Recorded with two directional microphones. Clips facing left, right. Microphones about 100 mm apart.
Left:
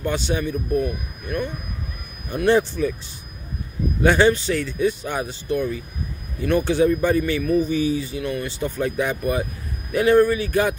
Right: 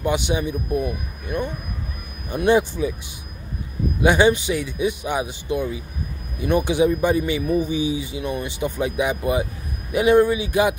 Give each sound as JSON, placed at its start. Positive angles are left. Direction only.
{"t": 0.0, "sound": "speech", "side_deg": -15}
{"t": 4.0, "sound": "speech", "side_deg": -15}